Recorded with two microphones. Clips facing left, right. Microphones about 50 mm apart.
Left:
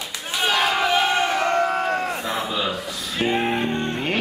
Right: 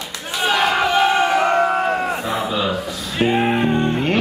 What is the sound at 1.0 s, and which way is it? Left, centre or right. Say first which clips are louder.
Crowd: right 5 dB; centre.